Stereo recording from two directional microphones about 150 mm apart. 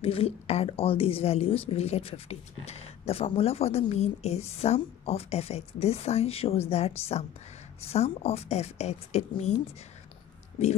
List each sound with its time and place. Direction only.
0.0 s a woman's voice: 40° left (ahead or behind)
10.6 s speech: 45° left (ahead or behind)